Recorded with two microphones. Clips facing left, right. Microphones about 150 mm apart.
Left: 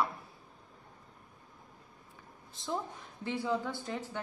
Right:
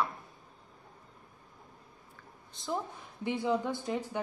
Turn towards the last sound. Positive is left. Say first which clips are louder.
# right 4 dB
turn(degrees=-15)  # may be behind; listen again after turning